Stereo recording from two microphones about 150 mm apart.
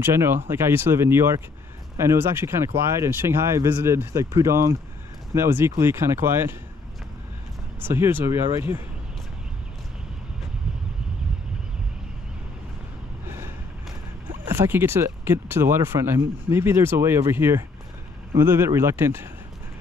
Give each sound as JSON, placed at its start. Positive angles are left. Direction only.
{"t": 0.0, "sound": "speech", "side_deg": -15}
{"t": 7.8, "sound": "speech", "side_deg": -15}
{"t": 14.5, "sound": "speech", "side_deg": -15}